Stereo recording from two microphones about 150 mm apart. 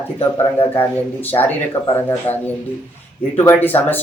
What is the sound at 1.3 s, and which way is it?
Speech, 25° left (ahead or behind).